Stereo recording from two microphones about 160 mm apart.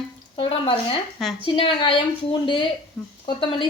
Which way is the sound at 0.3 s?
35° left (ahead or behind).